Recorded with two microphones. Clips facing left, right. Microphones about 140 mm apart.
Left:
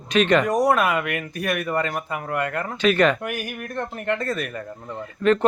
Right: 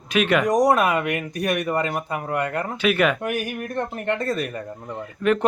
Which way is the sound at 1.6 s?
15° right (ahead or behind).